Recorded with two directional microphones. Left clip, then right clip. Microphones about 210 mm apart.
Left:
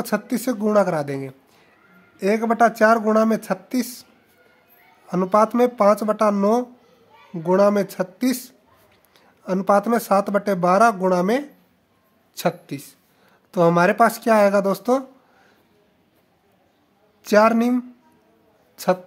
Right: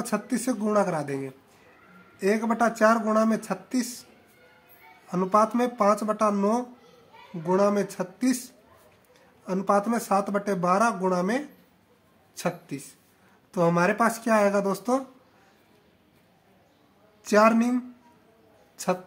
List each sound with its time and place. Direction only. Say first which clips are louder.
0.0 s speech: left 5 dB; 40° left (ahead or behind)
17.2 s speech: left 4 dB; 40° left (ahead or behind)